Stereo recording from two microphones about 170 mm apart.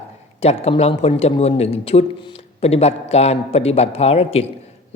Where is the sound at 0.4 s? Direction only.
35° left (ahead or behind).